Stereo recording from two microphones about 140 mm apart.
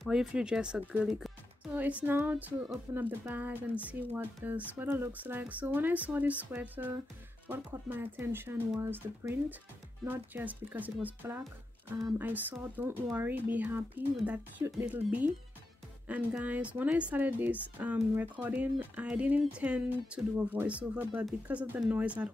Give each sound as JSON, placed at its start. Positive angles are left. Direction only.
{"t": 0.0, "sound": "speech", "side_deg": -5}